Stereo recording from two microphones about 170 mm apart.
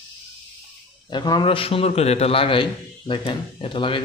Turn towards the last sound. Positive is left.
turn(degrees=30)  # may be behind; listen again after turning